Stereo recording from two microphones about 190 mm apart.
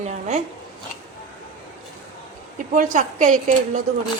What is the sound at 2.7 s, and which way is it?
A woman's voice, 45° right (ahead or behind).